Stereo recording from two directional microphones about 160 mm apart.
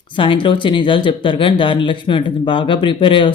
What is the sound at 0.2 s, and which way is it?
Speech, 30° left (ahead or behind).